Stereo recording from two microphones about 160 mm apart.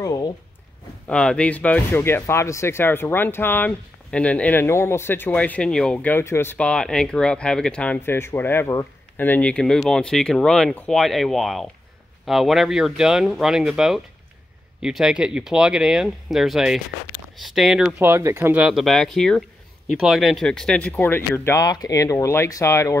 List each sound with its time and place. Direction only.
0.0 s a sound: 25° left (ahead or behind)
1.0 s speech: 5° left (ahead or behind); by 18.6 s 15° right (ahead or behind)
18.6 s speech: centre (ahead or behind); by 22.9 s 20° left (ahead or behind)